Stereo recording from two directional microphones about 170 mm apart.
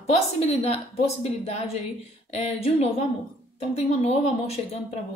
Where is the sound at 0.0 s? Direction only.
40° left (ahead or behind).